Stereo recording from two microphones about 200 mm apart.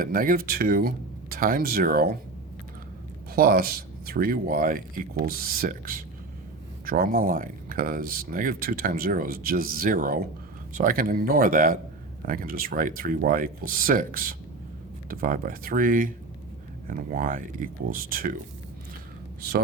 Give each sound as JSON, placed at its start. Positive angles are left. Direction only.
{"t": 0.0, "sound": "speech", "side_deg": -45}
{"t": 3.3, "sound": "speech", "side_deg": -45}